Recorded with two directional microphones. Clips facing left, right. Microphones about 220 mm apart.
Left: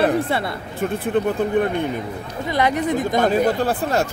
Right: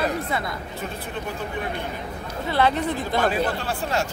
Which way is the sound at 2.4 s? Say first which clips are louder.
Left 2 dB; 15° left (ahead or behind).